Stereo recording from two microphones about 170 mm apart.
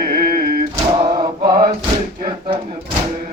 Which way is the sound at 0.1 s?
65° right (ahead or behind).